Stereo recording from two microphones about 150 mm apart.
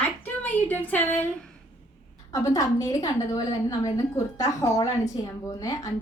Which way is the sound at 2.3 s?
20° left (ahead or behind).